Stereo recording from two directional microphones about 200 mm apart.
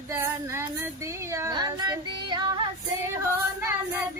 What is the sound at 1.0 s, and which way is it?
Child singing, 15° right (ahead or behind).